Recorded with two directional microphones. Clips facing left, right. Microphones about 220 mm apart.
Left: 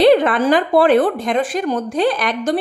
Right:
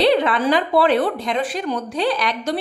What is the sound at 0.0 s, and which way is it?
A woman's voice, 50° left (ahead or behind).